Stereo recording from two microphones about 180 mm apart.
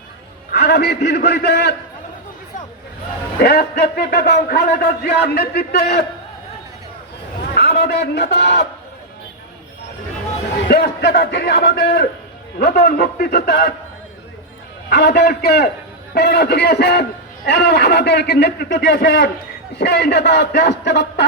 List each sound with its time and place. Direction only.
0.5 s a man's voice: 65° left (ahead or behind)
3.3 s a man's voice: 60° left (ahead or behind)
7.5 s a man's voice: 60° left (ahead or behind)
10.7 s a man's voice: 60° left (ahead or behind)
14.8 s a man's voice: 60° left (ahead or behind)